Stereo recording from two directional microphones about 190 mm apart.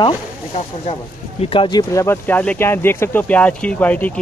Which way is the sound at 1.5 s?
25° left (ahead or behind).